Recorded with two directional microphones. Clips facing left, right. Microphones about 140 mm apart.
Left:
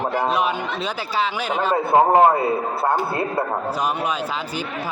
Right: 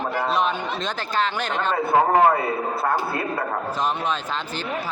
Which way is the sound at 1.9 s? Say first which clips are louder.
Left 3 dB; 25° left (ahead or behind).